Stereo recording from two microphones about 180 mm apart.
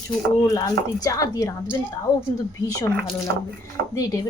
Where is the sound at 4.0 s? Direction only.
20° left (ahead or behind).